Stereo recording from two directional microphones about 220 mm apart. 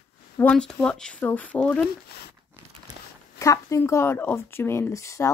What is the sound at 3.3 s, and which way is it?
Speech, 15° left (ahead or behind).